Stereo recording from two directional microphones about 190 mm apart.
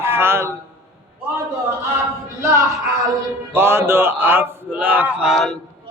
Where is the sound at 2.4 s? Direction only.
15° right (ahead or behind); by 5.6 s 5° left (ahead or behind).